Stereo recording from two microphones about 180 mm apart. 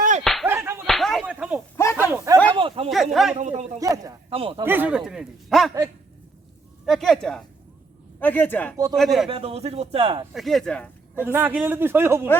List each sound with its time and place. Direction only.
0.4 s music: 15° right (ahead or behind)
0.9 s whip: centre (ahead or behind)
1.7 s a sound: 15° left (ahead or behind)
2.0 s a man's voice: 15° right (ahead or behind)
2.6 s speech: 30° right (ahead or behind)
2.9 s a man's voice: centre (ahead or behind)
3.3 s speech: 40° right (ahead or behind)
3.8 s speech: 20° right (ahead or behind)
4.3 s speech: 30° right (ahead or behind)
4.6 s a man's voice: 10° right (ahead or behind)
6.8 s a man's voice: centre (ahead or behind)
9.3 s speech: 35° right (ahead or behind)
10.3 s a man's voice: centre (ahead or behind)
11.3 s a man's voice: 10° right (ahead or behind)